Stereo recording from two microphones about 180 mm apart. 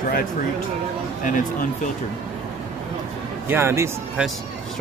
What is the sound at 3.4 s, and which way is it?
Speech, 10° right (ahead or behind).